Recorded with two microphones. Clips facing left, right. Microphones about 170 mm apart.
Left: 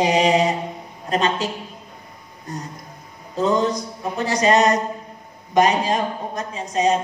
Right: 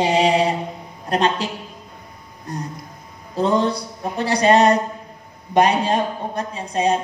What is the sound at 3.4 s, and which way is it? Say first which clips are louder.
Speech: right 1 dB; 35° right (ahead or behind).